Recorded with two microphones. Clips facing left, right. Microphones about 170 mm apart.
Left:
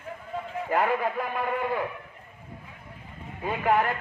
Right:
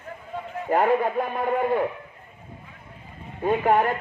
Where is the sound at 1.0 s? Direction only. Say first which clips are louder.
Right 4 dB; 25° right (ahead or behind).